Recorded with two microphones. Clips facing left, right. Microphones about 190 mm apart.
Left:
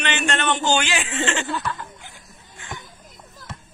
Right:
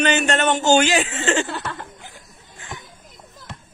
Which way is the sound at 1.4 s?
65° right (ahead or behind).